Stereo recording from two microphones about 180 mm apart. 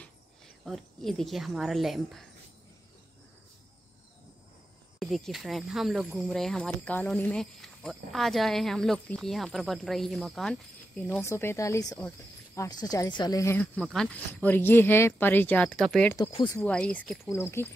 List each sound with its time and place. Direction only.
0.7 s speech: centre (ahead or behind)
4.9 s speech: centre (ahead or behind)
11.2 s speech: 15° left (ahead or behind)
16.2 s speech: 30° left (ahead or behind)
16.5 s speech: 5° left (ahead or behind)